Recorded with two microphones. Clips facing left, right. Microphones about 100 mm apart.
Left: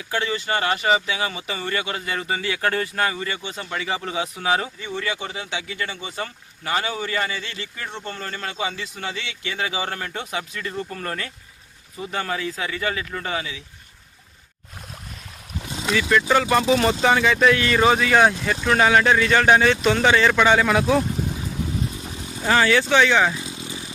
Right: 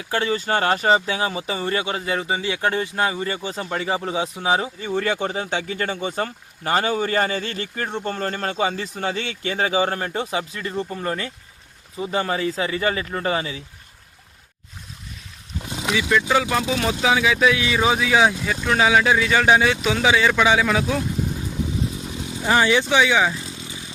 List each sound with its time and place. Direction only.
0.1 s speech: 35° right (ahead or behind)
3.2 s speech: 35° right (ahead or behind)
4.9 s speech: 45° right (ahead or behind)
15.7 s speech: 10° right (ahead or behind)
22.4 s speech: 15° right (ahead or behind)